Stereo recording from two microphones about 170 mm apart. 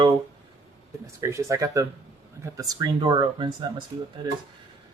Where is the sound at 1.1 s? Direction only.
15° right (ahead or behind).